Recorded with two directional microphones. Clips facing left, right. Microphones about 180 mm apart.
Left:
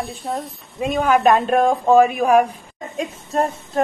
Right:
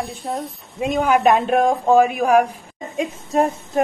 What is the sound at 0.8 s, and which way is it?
A woman's voice, 10° right (ahead or behind).